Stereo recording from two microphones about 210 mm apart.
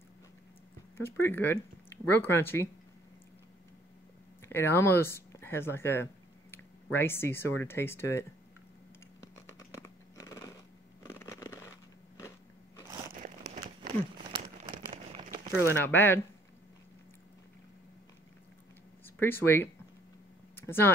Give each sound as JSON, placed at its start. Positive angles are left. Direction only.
{"t": 0.9, "sound": "speech", "side_deg": 10}
{"t": 4.5, "sound": "speech", "side_deg": 10}
{"t": 9.2, "sound": "a sound", "side_deg": 15}
{"t": 14.1, "sound": "crumpling", "side_deg": -30}
{"t": 15.7, "sound": "speech", "side_deg": 10}
{"t": 19.0, "sound": "speech", "side_deg": 10}